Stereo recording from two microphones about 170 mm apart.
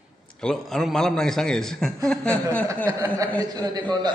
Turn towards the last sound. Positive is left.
turn(degrees=-25)  # may be behind; listen again after turning